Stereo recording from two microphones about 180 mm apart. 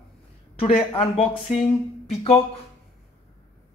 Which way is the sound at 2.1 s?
35° left (ahead or behind).